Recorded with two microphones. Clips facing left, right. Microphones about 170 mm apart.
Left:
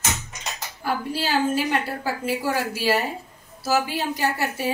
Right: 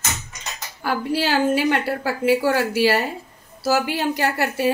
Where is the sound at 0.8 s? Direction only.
75° right (ahead or behind).